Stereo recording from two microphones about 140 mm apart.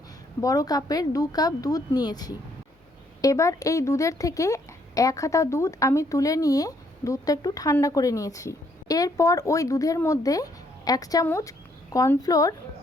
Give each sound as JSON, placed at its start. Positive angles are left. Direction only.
{"t": 0.4, "sound": "speech", "side_deg": 25}